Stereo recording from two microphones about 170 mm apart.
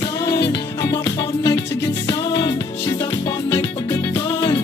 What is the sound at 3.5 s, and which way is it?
Music, 20° left (ahead or behind).